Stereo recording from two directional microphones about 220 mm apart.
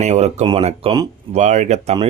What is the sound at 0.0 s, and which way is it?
Speech, 30° right (ahead or behind).